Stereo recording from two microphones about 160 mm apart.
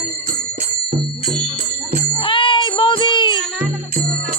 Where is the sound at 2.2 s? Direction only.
30° left (ahead or behind).